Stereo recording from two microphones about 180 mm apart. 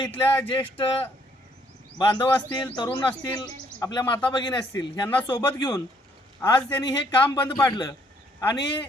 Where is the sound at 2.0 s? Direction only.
25° left (ahead or behind).